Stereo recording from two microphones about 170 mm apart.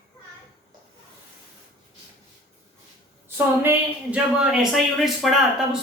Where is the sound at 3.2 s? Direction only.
15° right (ahead or behind).